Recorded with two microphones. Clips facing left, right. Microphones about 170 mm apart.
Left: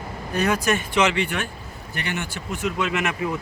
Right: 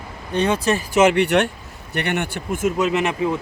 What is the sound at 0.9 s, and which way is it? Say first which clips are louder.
Speech: right 11 dB; 50° right (ahead or behind).